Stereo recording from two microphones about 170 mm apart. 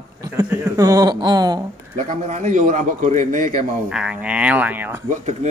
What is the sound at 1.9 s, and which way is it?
A man's voice, 45° right (ahead or behind).